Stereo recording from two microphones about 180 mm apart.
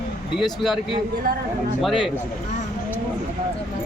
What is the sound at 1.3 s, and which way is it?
Speech, 55° right (ahead or behind).